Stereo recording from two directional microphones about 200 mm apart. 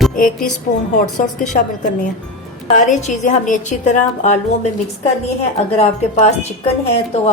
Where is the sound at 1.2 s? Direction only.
40° left (ahead or behind).